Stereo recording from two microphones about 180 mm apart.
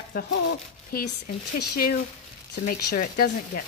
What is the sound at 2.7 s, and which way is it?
Speech, 50° left (ahead or behind).